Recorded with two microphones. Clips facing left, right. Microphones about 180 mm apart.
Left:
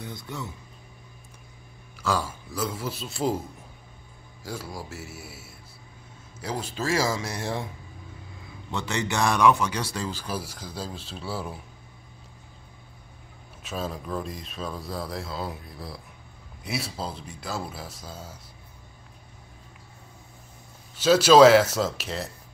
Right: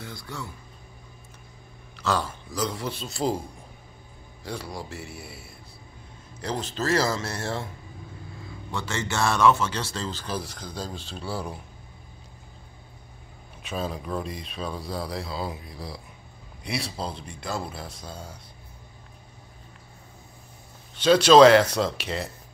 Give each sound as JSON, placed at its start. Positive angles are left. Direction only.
{"t": 0.0, "sound": "speech", "side_deg": 20}
{"t": 2.0, "sound": "speech", "side_deg": 10}
{"t": 4.5, "sound": "speech", "side_deg": 5}
{"t": 8.7, "sound": "speech", "side_deg": 15}
{"t": 13.6, "sound": "speech", "side_deg": 0}
{"t": 20.9, "sound": "speech", "side_deg": 5}